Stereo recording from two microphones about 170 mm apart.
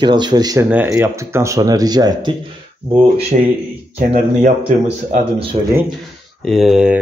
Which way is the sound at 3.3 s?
45° right (ahead or behind).